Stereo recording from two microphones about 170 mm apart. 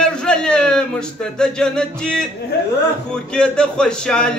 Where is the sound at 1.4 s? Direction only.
5° left (ahead or behind).